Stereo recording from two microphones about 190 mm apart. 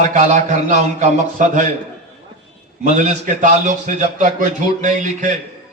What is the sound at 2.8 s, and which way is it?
A man's voice, 40° right (ahead or behind).